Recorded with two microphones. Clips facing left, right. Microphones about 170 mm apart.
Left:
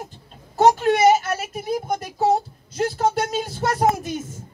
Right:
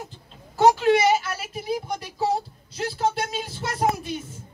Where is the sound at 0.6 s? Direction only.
45° left (ahead or behind).